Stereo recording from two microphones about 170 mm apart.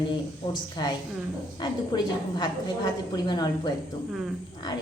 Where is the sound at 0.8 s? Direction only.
25° left (ahead or behind).